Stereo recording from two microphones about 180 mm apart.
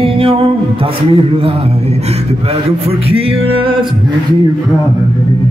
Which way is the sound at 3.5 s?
30° right (ahead or behind).